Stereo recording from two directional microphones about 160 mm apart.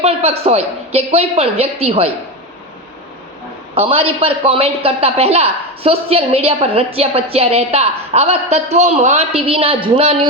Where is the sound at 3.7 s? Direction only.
35° right (ahead or behind).